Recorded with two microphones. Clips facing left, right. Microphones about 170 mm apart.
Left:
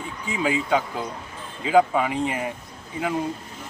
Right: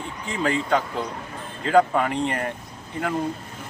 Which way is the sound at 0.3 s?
5° left (ahead or behind).